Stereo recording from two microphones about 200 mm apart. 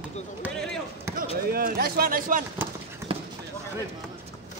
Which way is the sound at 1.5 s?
45° right (ahead or behind).